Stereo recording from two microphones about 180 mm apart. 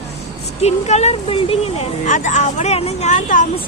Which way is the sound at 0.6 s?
40° left (ahead or behind).